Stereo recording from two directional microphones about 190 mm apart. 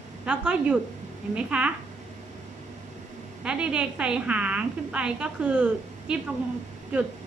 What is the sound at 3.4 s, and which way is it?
A woman's voice, 5° right (ahead or behind).